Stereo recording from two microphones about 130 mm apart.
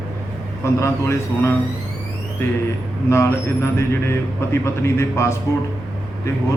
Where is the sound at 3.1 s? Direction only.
20° left (ahead or behind).